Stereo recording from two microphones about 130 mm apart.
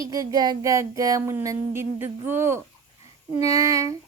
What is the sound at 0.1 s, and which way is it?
Speech, 30° right (ahead or behind).